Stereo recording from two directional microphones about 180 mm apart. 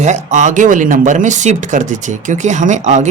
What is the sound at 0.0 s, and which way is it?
Speech, 40° right (ahead or behind).